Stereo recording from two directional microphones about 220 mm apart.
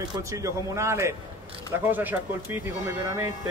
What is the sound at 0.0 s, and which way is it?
Speech, 15° right (ahead or behind).